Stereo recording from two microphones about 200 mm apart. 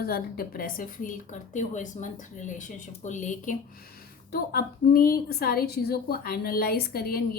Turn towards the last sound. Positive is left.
turn(degrees=50)  # may be behind; listen again after turning